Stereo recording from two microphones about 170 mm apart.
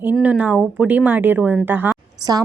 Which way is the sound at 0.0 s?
10° right (ahead or behind).